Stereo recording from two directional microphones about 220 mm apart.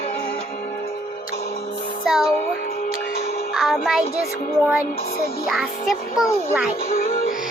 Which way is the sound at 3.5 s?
Centre (ahead or behind).